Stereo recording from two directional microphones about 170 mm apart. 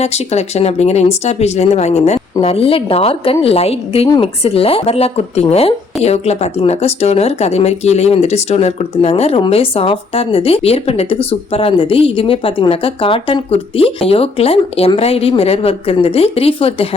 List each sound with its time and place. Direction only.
0.0 s speech: 40° left (ahead or behind)